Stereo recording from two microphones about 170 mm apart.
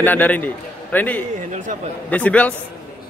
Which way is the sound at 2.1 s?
10° left (ahead or behind).